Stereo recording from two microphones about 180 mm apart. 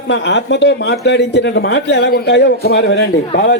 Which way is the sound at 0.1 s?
70° left (ahead or behind).